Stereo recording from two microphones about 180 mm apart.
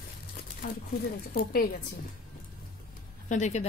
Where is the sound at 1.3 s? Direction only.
55° left (ahead or behind).